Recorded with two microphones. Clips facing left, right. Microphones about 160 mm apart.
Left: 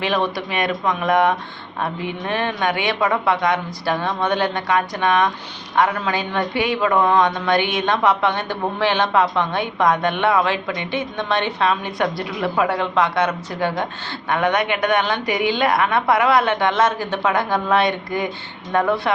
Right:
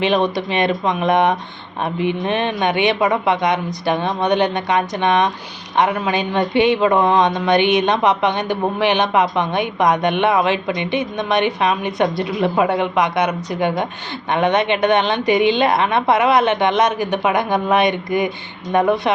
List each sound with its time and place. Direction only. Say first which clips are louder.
0.0 s speech: right 4 dB; 20° right (ahead or behind)